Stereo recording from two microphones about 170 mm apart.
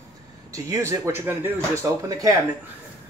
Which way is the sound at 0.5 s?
20° right (ahead or behind).